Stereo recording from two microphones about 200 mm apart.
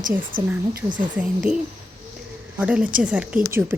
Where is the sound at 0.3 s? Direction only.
50° right (ahead or behind).